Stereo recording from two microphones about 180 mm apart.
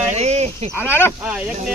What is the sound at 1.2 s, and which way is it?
Speech, 5° right (ahead or behind).